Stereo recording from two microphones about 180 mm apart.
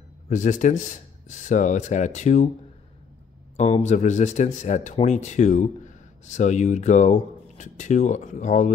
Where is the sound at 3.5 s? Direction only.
40° left (ahead or behind).